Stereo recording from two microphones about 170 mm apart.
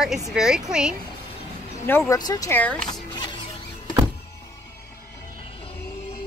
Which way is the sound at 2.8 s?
25° left (ahead or behind).